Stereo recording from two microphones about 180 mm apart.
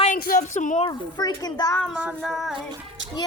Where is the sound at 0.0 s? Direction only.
50° left (ahead or behind).